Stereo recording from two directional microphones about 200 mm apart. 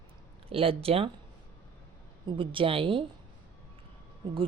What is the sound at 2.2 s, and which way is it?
Speech, 25° right (ahead or behind).